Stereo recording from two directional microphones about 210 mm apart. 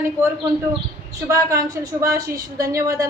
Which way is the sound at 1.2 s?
15° right (ahead or behind).